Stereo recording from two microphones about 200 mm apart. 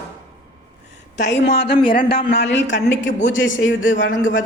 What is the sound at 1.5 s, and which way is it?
Speech, 30° left (ahead or behind).